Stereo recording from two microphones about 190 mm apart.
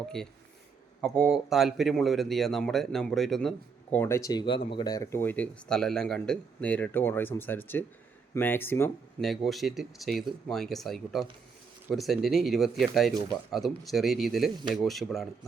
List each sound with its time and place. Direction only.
0.0 s speech: 5° left (ahead or behind)
3.9 s a man's voice: 15° left (ahead or behind)
9.2 s speech: centre (ahead or behind)